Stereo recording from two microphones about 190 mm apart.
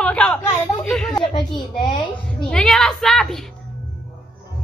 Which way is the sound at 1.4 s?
25° left (ahead or behind).